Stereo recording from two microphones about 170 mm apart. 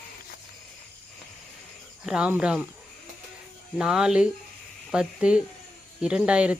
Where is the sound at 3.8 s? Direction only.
5° right (ahead or behind).